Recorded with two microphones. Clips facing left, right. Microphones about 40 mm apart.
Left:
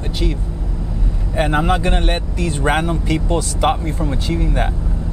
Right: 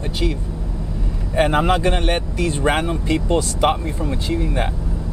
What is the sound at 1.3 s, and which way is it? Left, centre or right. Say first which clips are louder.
Speech: right 1 dB; centre.